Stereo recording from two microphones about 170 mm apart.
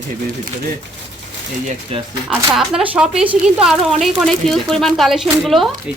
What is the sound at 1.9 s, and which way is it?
Speech, 35° right (ahead or behind).